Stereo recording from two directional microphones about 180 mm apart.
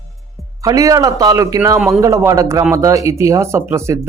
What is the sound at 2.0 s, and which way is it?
Speech, 15° right (ahead or behind).